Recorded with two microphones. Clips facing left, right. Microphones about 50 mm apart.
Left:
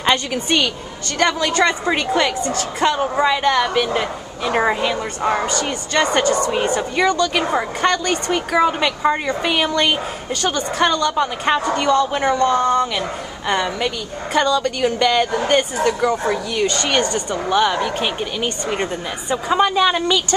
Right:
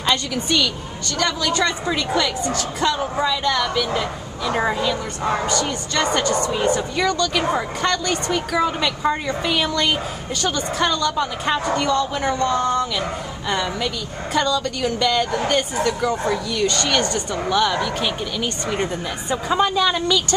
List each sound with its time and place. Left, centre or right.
0.0 s a woman's voice: left
6.7 s speech: centre